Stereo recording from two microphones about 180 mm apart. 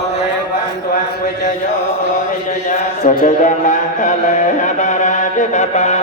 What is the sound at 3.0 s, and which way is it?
Mantra, 45° left (ahead or behind).